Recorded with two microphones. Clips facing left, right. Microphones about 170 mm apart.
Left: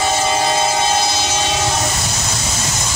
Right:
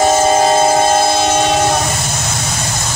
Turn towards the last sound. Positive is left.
turn(degrees=-50)  # may be behind; listen again after turning